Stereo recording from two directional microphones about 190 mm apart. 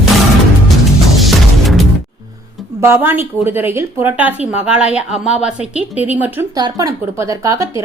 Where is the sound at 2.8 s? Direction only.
10° right (ahead or behind).